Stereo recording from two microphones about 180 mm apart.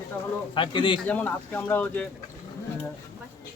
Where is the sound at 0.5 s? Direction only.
25° left (ahead or behind).